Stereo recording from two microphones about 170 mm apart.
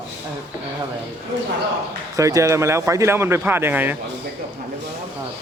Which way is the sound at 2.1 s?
20° right (ahead or behind).